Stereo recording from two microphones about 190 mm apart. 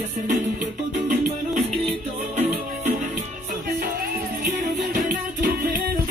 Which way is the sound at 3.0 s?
45° right (ahead or behind).